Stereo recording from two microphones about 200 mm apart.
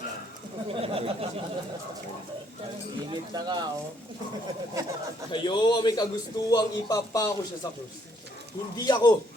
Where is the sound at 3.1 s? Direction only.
20° right (ahead or behind).